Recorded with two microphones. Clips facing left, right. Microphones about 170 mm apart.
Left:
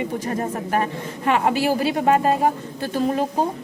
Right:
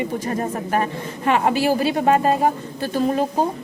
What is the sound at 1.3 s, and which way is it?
A woman's voice, 30° right (ahead or behind).